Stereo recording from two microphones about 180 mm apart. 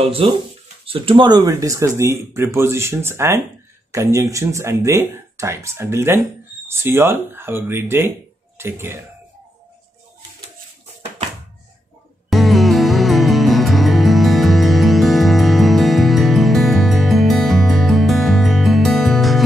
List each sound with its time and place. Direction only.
0.0 s speech: 30° right (ahead or behind); by 8.9 s 15° right (ahead or behind)
12.3 s music: centre (ahead or behind)